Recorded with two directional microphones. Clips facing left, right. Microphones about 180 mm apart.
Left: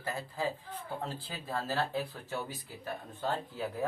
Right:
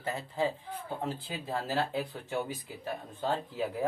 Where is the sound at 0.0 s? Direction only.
25° right (ahead or behind).